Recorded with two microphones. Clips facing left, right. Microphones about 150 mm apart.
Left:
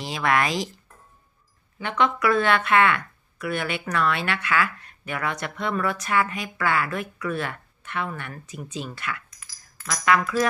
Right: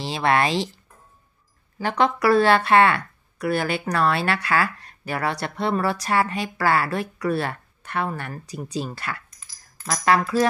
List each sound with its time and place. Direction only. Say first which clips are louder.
0.0 s speech: right 3 dB; 30° right (ahead or behind)
1.8 s speech: right 2 dB; 35° right (ahead or behind)